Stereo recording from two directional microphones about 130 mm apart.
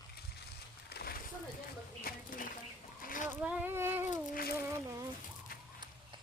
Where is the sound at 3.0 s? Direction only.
85° left.